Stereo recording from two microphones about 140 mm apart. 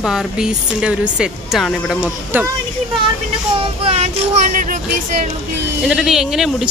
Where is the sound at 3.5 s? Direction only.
45° right (ahead or behind).